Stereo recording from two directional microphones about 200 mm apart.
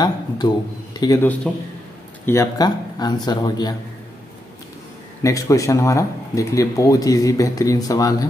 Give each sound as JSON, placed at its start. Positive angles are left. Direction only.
{"t": 0.4, "sound": "speech", "side_deg": 20}
{"t": 5.2, "sound": "speech", "side_deg": 15}